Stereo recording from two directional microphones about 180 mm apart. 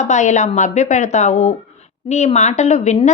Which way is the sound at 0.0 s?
40° left (ahead or behind).